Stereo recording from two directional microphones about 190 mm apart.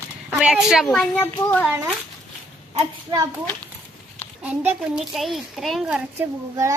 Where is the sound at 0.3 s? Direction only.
5° right (ahead or behind).